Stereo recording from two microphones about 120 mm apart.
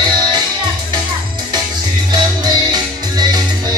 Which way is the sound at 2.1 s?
35° right (ahead or behind).